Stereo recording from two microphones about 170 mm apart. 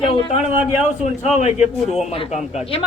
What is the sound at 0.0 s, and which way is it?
Speech, 30° left (ahead or behind).